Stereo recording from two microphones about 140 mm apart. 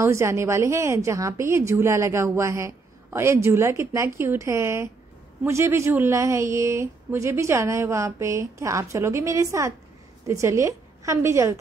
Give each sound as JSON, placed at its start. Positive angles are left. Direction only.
{"t": 0.0, "sound": "a woman's voice", "side_deg": -20}